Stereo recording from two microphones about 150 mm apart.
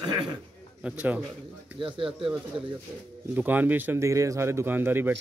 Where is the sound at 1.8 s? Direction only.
35° right (ahead or behind).